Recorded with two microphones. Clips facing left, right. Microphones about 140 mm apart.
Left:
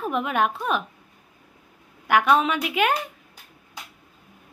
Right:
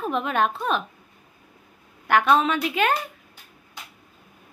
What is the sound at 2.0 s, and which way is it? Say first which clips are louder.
Speech: even; 10° left (ahead or behind).